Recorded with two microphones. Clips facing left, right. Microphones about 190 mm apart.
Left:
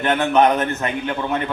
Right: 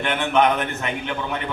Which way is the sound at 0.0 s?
40° left (ahead or behind).